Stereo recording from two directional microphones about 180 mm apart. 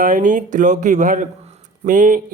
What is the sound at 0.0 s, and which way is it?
Speech, 45° right (ahead or behind).